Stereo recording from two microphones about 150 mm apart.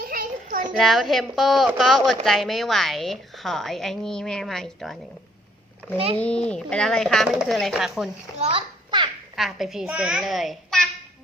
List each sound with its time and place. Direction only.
0.0 s children playing: 70° right (ahead or behind)
0.8 s speech: centre (ahead or behind)
6.1 s speech: 5° left (ahead or behind)
8.4 s a child's voice: 40° right (ahead or behind)
9.3 s speech: centre (ahead or behind)